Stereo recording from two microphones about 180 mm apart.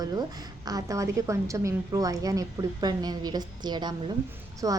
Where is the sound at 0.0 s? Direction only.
20° right (ahead or behind).